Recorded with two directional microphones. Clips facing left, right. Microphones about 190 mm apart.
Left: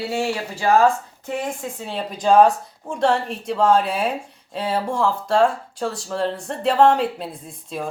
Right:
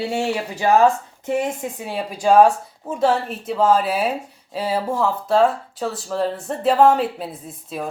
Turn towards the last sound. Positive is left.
turn(degrees=-5)  # may be behind; listen again after turning